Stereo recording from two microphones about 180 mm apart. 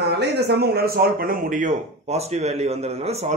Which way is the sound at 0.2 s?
65° right (ahead or behind).